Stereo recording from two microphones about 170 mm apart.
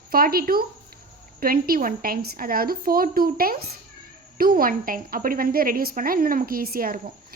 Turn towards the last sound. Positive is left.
turn(degrees=-60)  # may be behind; listen again after turning